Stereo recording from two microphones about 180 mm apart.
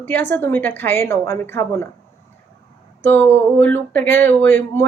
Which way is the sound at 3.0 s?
10° left (ahead or behind).